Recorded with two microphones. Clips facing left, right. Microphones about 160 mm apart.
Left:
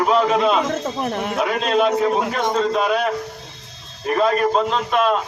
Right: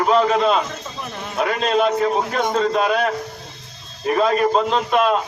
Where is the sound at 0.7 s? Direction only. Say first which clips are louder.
Left 9 dB; 55° left (ahead or behind).